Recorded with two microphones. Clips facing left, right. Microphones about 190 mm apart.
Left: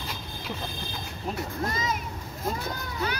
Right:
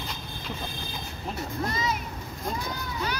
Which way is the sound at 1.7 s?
45° left (ahead or behind).